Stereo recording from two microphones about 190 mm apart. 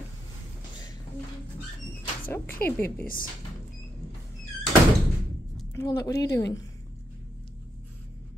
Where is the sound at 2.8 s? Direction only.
55° left (ahead or behind).